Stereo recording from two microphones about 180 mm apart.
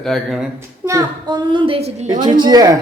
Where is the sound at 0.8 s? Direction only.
15° right (ahead or behind); by 2.1 s 35° right (ahead or behind).